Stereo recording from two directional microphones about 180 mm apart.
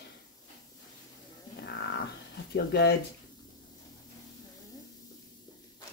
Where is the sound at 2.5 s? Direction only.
65° left (ahead or behind).